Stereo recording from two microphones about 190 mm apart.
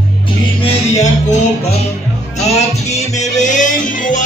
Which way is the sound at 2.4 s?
35° left (ahead or behind).